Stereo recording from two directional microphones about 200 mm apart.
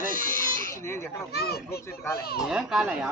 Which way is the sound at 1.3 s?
50° left (ahead or behind).